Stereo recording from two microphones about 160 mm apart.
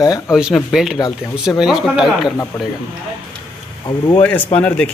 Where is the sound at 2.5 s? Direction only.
15° left (ahead or behind).